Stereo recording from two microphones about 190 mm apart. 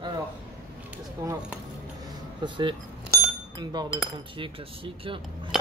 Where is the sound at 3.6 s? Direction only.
20° right (ahead or behind).